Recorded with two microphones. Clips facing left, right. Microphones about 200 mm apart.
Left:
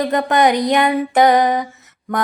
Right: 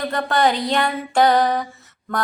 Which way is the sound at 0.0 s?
20° left (ahead or behind).